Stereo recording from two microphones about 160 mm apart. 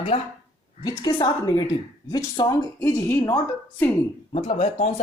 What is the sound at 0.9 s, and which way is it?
A woman's voice, 25° left (ahead or behind).